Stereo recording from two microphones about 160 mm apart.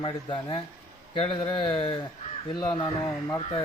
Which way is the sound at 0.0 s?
30° left (ahead or behind).